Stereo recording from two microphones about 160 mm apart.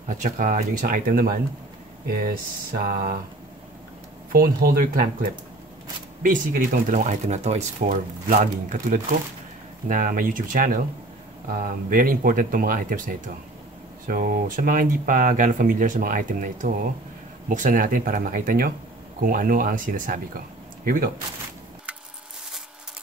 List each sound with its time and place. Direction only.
0.1 s speech: 55° right (ahead or behind)
4.3 s speech: 65° right (ahead or behind)